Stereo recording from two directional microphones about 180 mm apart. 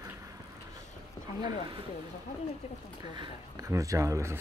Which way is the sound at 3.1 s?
20° right (ahead or behind).